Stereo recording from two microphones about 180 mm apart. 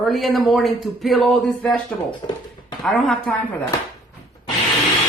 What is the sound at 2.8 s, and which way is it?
Speech, centre (ahead or behind).